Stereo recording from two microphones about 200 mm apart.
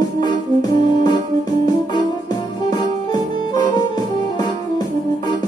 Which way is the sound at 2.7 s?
20° left (ahead or behind).